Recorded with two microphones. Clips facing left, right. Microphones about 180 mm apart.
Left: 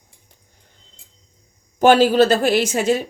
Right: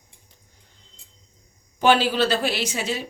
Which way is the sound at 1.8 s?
45° left (ahead or behind).